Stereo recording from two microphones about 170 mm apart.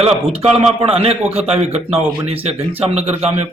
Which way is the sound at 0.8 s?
35° right (ahead or behind).